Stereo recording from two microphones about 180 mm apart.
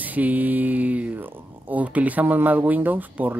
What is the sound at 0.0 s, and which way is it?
Speech, 10° right (ahead or behind).